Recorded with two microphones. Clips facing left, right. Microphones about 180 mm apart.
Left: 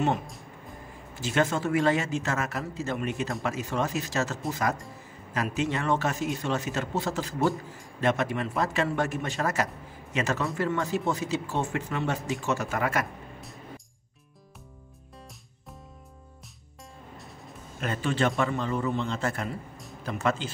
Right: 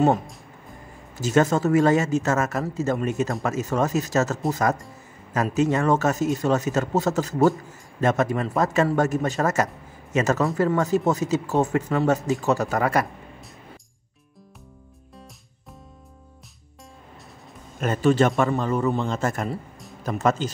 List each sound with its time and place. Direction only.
1.1 s a man's voice: 40° right (ahead or behind)
17.7 s a man's voice: 45° right (ahead or behind)